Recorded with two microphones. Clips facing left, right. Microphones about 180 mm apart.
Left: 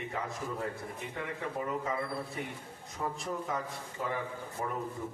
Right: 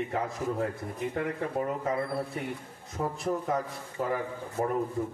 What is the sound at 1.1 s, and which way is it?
Speech, 50° right (ahead or behind).